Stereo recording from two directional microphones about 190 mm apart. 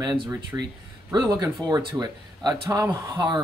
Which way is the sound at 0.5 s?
10° right (ahead or behind).